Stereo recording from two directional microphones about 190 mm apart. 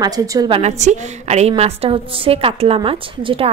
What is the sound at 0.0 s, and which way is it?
Speech, 20° right (ahead or behind).